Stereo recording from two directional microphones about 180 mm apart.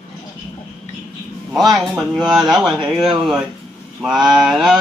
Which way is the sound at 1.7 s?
5° right (ahead or behind).